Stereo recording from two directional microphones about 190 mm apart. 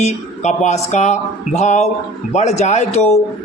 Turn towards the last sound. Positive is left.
turn(degrees=35)  # may be behind; listen again after turning